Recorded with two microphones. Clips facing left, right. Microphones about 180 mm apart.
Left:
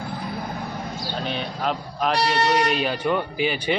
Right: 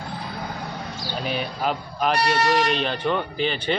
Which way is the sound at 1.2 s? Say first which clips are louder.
Right 2 dB; 5° right (ahead or behind).